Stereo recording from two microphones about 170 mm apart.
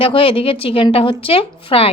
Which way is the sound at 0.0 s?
30° left (ahead or behind).